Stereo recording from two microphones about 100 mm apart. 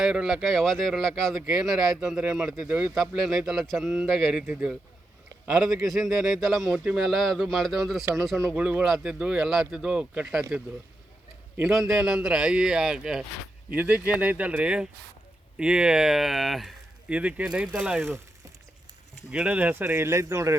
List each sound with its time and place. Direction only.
0.0 s speech: 5° right (ahead or behind)
2.6 s speech: 15° right (ahead or behind)
2.9 s speech: centre (ahead or behind)
4.4 s speech: 15° right (ahead or behind)
5.9 s speech: centre (ahead or behind)
8.5 s speech: 10° right (ahead or behind)
11.6 s speech: 5° right (ahead or behind)
17.1 s speech: 15° right (ahead or behind)
19.3 s speech: 10° right (ahead or behind); by 20.6 s 30° right (ahead or behind)